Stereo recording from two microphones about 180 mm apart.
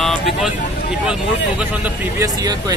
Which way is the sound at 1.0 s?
5° right (ahead or behind).